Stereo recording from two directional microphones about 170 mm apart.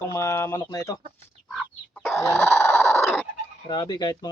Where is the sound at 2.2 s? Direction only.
10° left (ahead or behind).